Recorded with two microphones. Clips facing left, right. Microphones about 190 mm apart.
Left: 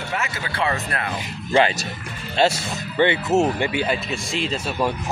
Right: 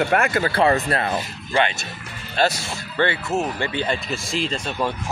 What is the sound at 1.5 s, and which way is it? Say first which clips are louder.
Speech: left 3 dB; 35° left (ahead or behind).